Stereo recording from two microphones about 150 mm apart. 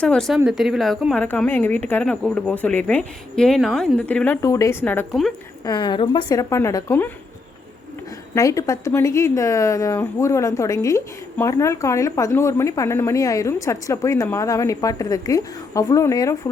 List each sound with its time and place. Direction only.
0.0 s a woman's voice: 5° left (ahead or behind)
5.6 s speech: 30° left (ahead or behind)
8.4 s speech: 20° left (ahead or behind)